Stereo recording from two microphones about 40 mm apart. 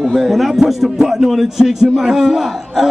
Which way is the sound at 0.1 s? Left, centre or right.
Centre.